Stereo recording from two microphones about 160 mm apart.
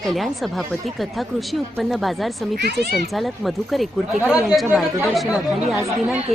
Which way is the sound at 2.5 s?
90° right.